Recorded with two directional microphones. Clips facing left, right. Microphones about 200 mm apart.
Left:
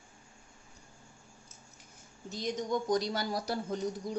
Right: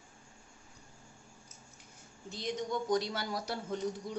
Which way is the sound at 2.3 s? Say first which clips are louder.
Left 3 dB; 40° left (ahead or behind).